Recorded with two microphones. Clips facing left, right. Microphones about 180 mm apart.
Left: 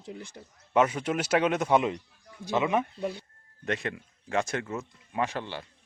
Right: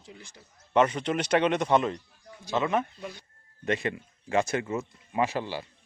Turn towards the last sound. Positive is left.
turn(degrees=-5)  # may be behind; listen again after turning